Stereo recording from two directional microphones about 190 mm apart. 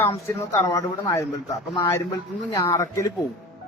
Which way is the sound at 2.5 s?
15° left (ahead or behind).